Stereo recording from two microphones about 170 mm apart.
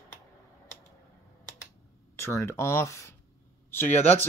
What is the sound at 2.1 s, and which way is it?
Speech, 15° left (ahead or behind).